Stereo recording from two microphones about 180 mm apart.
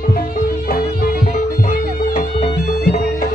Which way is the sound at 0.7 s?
55° left (ahead or behind).